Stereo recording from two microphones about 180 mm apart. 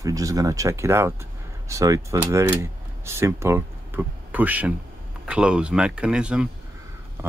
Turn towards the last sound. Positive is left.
turn(degrees=-5)  # may be behind; listen again after turning